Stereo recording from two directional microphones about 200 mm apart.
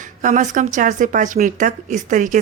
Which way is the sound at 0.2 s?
40° right (ahead or behind).